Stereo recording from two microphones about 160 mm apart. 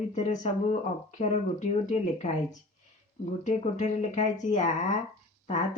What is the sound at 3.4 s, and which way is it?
Speech, 50° left (ahead or behind).